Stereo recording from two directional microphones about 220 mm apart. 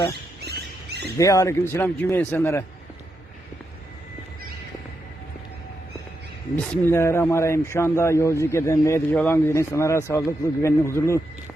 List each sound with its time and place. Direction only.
0.4 s rodents: 50° right (ahead or behind)
1.2 s speech: 15° left (ahead or behind)
6.6 s speech: 10° left (ahead or behind)